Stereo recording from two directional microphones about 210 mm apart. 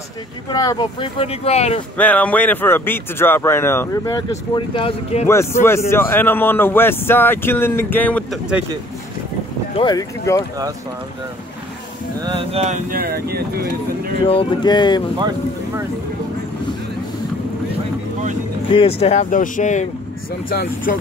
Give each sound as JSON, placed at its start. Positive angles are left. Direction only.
{"t": 0.5, "sound": "speech", "side_deg": 20}
{"t": 2.0, "sound": "speech", "side_deg": 5}
{"t": 5.3, "sound": "speech", "side_deg": 10}
{"t": 9.8, "sound": "speech", "side_deg": 20}
{"t": 12.2, "sound": "speech", "side_deg": -25}
{"t": 14.2, "sound": "speech", "side_deg": 25}
{"t": 15.1, "sound": "speech", "side_deg": -20}
{"t": 18.7, "sound": "speech", "side_deg": 25}